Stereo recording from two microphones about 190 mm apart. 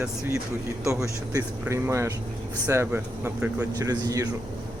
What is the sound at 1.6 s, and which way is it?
Speech, 15° right (ahead or behind).